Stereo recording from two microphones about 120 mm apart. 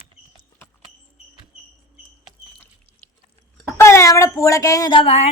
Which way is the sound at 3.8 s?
25° left (ahead or behind).